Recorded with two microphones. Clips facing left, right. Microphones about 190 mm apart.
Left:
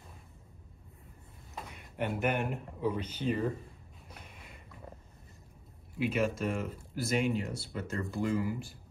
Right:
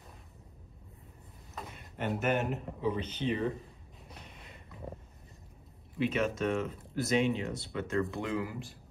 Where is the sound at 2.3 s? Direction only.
55° left (ahead or behind).